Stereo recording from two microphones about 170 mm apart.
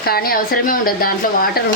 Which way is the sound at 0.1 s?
60° left (ahead or behind).